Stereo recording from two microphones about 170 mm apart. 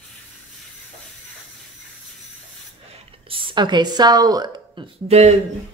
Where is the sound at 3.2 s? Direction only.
30° right (ahead or behind).